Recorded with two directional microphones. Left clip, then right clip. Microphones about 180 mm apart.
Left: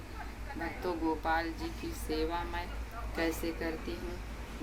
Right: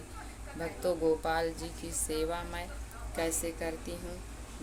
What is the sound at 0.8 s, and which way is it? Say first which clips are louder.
Speech: right 5 dB; 40° right (ahead or behind).